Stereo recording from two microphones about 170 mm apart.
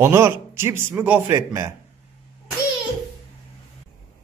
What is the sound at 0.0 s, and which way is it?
Speech, 15° right (ahead or behind).